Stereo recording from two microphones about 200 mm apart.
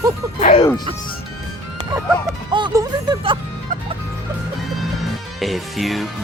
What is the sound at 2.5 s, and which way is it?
Music, 20° right (ahead or behind).